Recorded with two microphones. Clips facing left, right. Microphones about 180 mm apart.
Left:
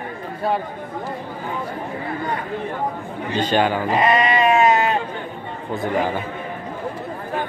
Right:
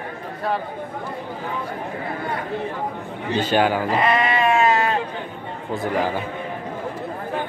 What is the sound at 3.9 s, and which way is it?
Sheep, 20° left (ahead or behind).